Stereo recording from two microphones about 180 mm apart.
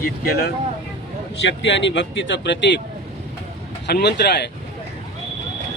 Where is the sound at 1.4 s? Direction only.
85° left.